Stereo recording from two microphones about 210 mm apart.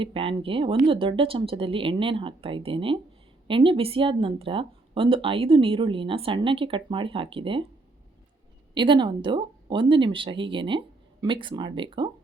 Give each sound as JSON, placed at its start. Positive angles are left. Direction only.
{"t": 0.0, "sound": "speech", "side_deg": -25}
{"t": 8.7, "sound": "speech", "side_deg": -20}